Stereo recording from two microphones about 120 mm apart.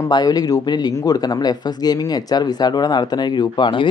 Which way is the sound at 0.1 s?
35° left (ahead or behind).